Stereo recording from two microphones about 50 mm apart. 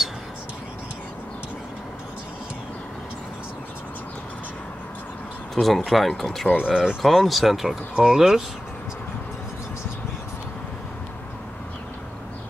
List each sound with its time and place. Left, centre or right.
5.5 s speech: centre
6.6 s speech: centre
7.0 s speech: centre
7.9 s speech: centre